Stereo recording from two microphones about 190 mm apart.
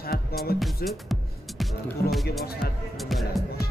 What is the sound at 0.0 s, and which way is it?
Music, 50° left (ahead or behind).